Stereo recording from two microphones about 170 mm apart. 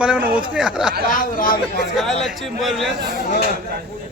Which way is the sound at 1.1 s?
55° left (ahead or behind).